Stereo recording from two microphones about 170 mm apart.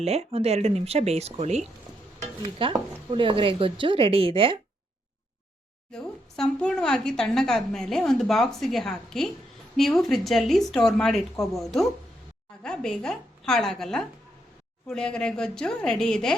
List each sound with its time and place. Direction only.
0.0 s speech: 40° right (ahead or behind)
5.9 s a woman's voice: 5° left (ahead or behind)